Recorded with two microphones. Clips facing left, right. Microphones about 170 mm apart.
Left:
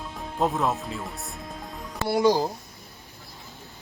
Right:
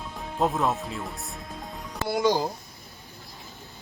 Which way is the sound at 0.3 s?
Centre (ahead or behind).